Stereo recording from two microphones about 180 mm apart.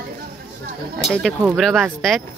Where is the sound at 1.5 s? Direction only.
Centre (ahead or behind).